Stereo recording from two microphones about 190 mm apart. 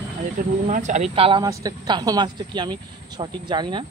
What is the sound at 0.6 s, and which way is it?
Speech, 40° right (ahead or behind).